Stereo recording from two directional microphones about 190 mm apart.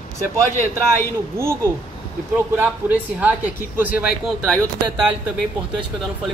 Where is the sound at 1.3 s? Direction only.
15° right (ahead or behind).